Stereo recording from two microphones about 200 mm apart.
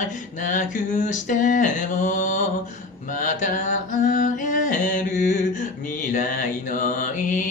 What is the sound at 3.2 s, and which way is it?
Mantra, 40° left (ahead or behind).